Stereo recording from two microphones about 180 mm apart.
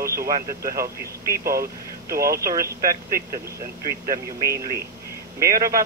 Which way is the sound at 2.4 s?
15° right (ahead or behind).